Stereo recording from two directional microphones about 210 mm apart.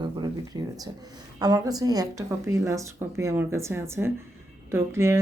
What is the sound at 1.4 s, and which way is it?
Speech, 15° right (ahead or behind).